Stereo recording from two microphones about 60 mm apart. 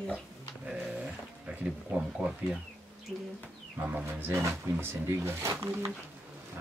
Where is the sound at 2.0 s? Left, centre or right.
Centre.